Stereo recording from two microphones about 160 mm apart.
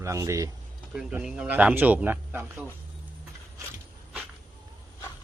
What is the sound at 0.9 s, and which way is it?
A man's voice, 5° right (ahead or behind).